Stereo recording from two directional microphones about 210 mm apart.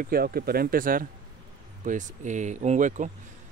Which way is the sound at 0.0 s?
45° right (ahead or behind).